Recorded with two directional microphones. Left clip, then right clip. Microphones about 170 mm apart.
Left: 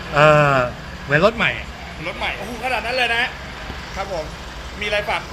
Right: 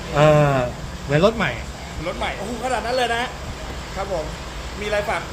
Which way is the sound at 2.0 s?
20° right (ahead or behind).